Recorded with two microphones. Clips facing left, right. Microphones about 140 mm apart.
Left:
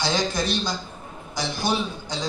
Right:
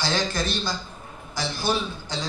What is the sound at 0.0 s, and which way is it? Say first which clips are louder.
A man's voice: left 2 dB; 15° left (ahead or behind).